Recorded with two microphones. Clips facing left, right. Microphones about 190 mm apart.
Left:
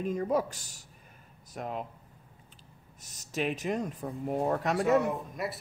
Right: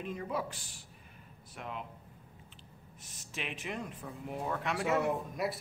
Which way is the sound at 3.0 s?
40° left (ahead or behind).